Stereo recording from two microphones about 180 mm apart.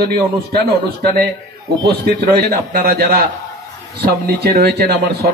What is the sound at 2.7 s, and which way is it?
A man's voice, 55° right (ahead or behind).